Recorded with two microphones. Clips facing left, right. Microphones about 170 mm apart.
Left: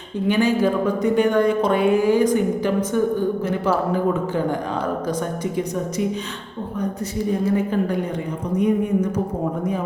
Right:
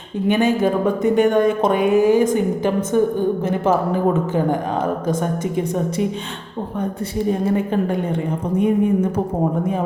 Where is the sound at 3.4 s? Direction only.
50° right (ahead or behind).